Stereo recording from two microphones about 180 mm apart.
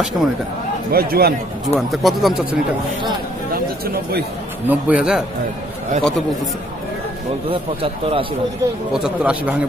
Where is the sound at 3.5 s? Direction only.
60° right (ahead or behind).